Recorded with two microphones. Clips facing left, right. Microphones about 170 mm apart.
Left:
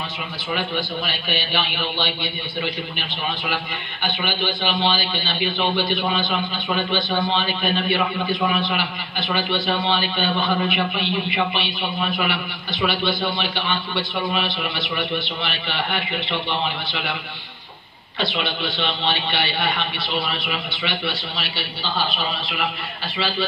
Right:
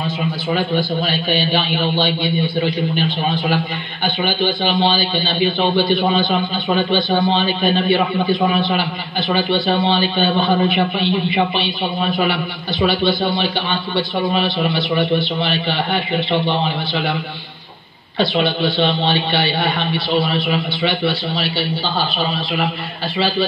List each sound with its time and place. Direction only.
0.5 s a man's voice: 35° right (ahead or behind)
18.2 s a man's voice: 35° right (ahead or behind)